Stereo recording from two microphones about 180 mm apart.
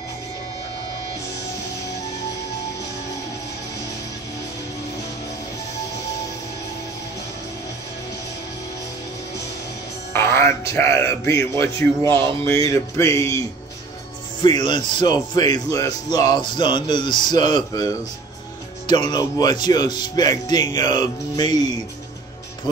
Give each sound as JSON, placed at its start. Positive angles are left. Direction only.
{"t": 10.1, "sound": "speech", "side_deg": 15}
{"t": 14.4, "sound": "speech", "side_deg": 25}